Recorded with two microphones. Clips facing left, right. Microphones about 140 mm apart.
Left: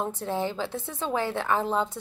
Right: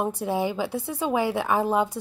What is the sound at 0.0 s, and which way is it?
A woman's voice, 15° right (ahead or behind).